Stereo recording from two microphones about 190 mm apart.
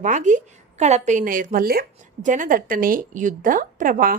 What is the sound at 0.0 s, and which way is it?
A woman's voice, 40° right (ahead or behind).